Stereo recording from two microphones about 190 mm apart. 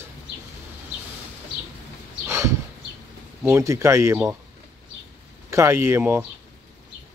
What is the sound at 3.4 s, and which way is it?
Speech, 15° right (ahead or behind).